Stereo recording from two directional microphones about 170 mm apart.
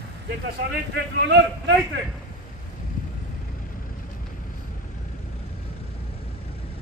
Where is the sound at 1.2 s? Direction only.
90° right.